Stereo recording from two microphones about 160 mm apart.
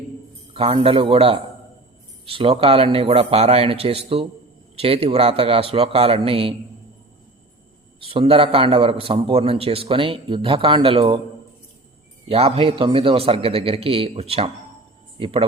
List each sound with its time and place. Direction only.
0.5 s a man's voice: 35° right (ahead or behind)
8.0 s a man's voice: 35° right (ahead or behind)
12.3 s a man's voice: 35° right (ahead or behind)